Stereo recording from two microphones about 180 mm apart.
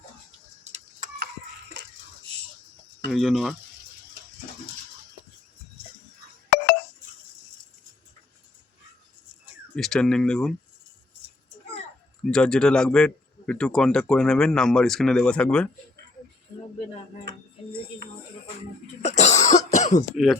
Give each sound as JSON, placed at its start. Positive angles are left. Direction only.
{"t": 0.6, "sound": "tick-tock", "side_deg": -40}
{"t": 1.7, "sound": "a sound", "side_deg": -75}
{"t": 3.1, "sound": "a man's voice", "side_deg": 0}
{"t": 9.7, "sound": "a man's voice", "side_deg": 5}
{"t": 12.2, "sound": "a man's voice", "side_deg": 5}
{"t": 17.3, "sound": "speech", "side_deg": -70}
{"t": 19.0, "sound": "cough", "side_deg": 40}
{"t": 20.1, "sound": "a man's voice", "side_deg": 0}